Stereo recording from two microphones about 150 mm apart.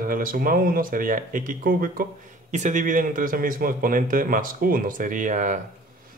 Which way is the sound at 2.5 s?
55° right (ahead or behind).